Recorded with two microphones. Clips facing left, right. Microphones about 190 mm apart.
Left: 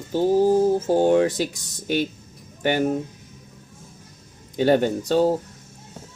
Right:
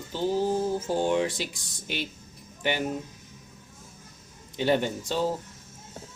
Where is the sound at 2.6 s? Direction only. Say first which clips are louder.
Left 7 dB; 50° left (ahead or behind).